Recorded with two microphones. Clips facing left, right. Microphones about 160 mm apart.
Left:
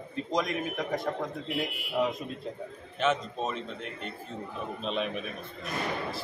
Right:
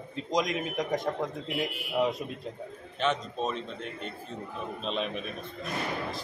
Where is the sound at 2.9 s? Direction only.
Centre (ahead or behind).